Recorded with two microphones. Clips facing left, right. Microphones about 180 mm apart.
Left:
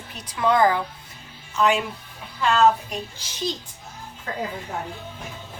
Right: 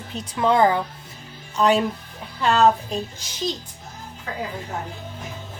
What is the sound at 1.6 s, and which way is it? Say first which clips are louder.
Speech: right 2 dB; 35° right (ahead or behind).